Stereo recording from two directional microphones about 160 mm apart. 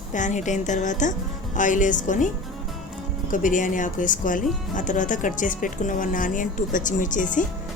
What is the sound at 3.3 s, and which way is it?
Speech, 55° left (ahead or behind).